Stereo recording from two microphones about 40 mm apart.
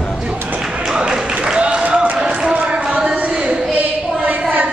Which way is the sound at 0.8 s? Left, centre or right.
Centre.